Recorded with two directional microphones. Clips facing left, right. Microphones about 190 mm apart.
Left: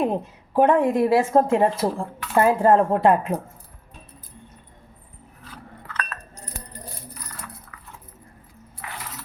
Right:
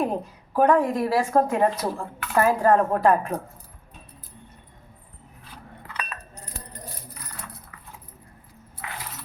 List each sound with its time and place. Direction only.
0.5 s speech: 25° left (ahead or behind)
5.9 s keys jangling: 5° right (ahead or behind)